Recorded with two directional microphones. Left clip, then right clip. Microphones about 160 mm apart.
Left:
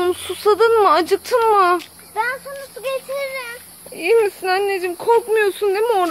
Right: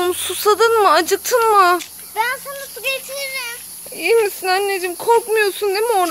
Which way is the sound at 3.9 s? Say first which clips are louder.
Even; 5° right (ahead or behind).